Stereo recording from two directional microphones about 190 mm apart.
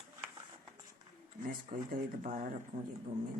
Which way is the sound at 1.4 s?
45° right (ahead or behind).